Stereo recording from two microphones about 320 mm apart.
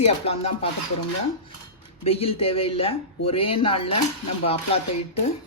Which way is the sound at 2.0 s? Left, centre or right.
Centre.